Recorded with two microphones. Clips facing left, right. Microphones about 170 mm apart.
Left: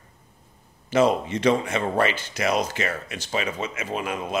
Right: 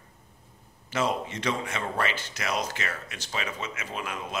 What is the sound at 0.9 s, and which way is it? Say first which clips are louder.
Speech: left 8 dB; 25° left (ahead or behind).